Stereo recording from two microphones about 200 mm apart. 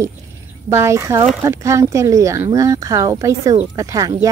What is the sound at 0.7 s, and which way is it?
Speech, 15° right (ahead or behind).